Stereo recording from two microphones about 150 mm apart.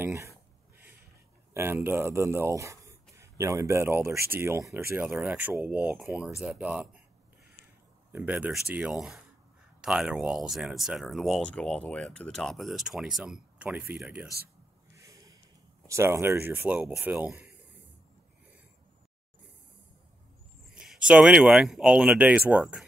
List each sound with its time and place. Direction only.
0.0 s a sound: 20° right (ahead or behind)
1.5 s speech: 15° right (ahead or behind)
8.1 s speech: 10° right (ahead or behind)
15.0 s a sound: 20° right (ahead or behind)
15.9 s speech: 20° right (ahead or behind)
20.7 s speech: 5° right (ahead or behind)